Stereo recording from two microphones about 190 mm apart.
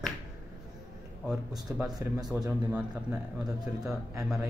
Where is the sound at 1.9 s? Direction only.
20° right (ahead or behind).